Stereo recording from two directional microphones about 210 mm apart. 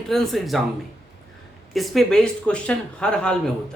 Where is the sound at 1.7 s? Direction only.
Centre (ahead or behind).